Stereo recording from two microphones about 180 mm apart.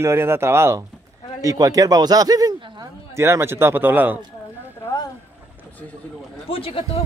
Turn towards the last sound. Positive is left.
turn(degrees=30)  # may be behind; listen again after turning